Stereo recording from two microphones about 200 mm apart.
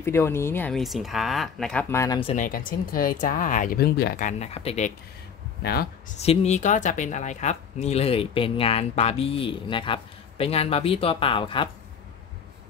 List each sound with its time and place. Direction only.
0.0 s speech: 10° left (ahead or behind)
2.3 s speech: 45° left (ahead or behind)
5.6 s speech: 50° left (ahead or behind)
6.2 s speech: 30° left (ahead or behind)